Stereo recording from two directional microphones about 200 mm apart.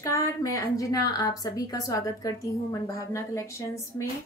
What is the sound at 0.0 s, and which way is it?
A woman's voice, 15° left (ahead or behind).